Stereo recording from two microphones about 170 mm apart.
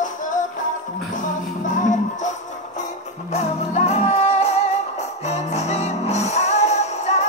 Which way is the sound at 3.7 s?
40° left (ahead or behind).